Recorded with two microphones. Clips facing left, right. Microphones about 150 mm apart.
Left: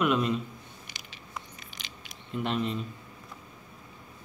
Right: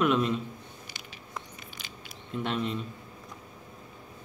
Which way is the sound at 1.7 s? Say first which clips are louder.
Right 2 dB; 90° left.